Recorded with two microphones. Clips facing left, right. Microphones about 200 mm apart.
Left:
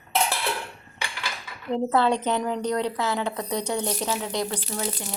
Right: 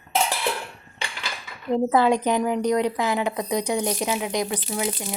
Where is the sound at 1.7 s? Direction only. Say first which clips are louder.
Right 3 dB; 10° right (ahead or behind).